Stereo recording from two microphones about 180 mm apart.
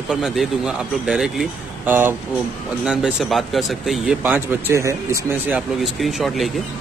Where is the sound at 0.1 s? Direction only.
5° right (ahead or behind).